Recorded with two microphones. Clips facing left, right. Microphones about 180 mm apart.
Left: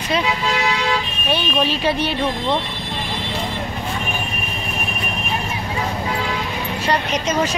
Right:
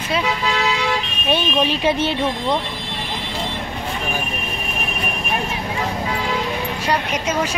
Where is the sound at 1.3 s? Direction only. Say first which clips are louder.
Right 1 dB; 20° right (ahead or behind).